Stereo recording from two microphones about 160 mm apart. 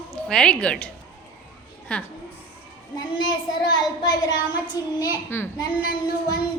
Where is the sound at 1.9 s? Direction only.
10° left (ahead or behind).